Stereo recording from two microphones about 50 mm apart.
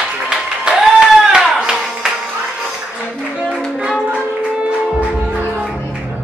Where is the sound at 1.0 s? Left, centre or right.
Centre.